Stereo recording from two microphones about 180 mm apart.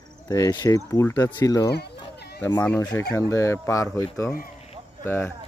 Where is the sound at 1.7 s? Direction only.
65° left (ahead or behind).